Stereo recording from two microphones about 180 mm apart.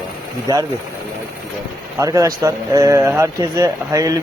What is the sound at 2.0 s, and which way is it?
Speech, 20° right (ahead or behind).